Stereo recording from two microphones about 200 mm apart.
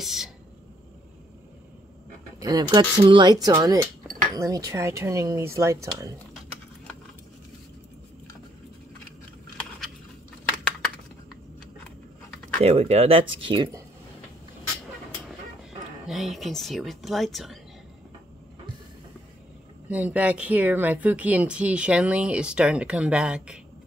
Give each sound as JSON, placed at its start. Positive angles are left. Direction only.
{"t": 0.0, "sound": "a woman's voice", "side_deg": 0}
{"t": 2.4, "sound": "speech", "side_deg": -20}
{"t": 12.5, "sound": "speech", "side_deg": -30}
{"t": 16.1, "sound": "a woman's voice", "side_deg": 0}
{"t": 19.9, "sound": "a woman's voice", "side_deg": -5}